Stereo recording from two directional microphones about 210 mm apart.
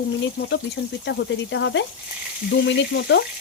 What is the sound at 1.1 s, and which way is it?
Speech, 60° left (ahead or behind).